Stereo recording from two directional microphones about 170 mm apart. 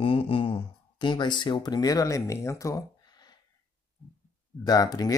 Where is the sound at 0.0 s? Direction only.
30° left (ahead or behind).